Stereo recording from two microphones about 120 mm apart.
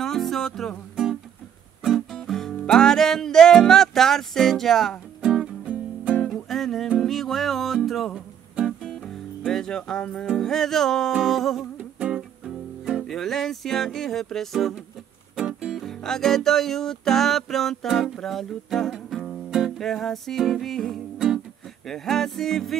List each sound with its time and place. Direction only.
0.0 s music: centre (ahead or behind)